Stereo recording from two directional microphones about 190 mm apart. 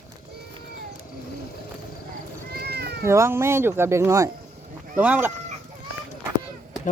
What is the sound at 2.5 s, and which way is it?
Cat, 55° right (ahead or behind).